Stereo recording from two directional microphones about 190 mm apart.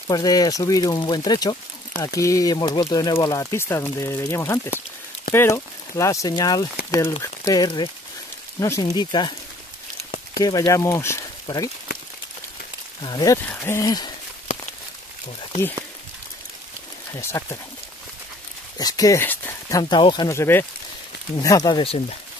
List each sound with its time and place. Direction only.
0.1 s speech: 20° left (ahead or behind)
13.0 s speech: 20° left (ahead or behind)
17.1 s speech: 15° left (ahead or behind)
18.8 s speech: 20° left (ahead or behind)
19.8 s speech: 25° left (ahead or behind)